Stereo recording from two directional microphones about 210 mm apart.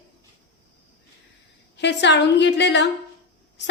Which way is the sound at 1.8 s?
55° left (ahead or behind).